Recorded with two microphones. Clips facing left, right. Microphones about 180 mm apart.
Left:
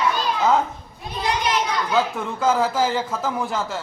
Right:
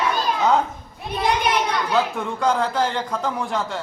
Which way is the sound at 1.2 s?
60° right (ahead or behind).